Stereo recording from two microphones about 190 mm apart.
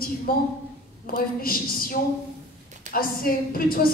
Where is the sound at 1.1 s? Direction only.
50° left (ahead or behind).